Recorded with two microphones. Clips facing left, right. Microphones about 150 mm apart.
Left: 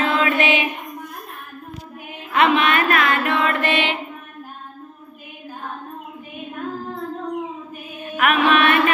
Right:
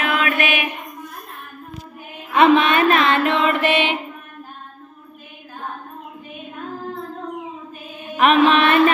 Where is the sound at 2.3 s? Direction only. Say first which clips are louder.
Right 3 dB; 25° right (ahead or behind).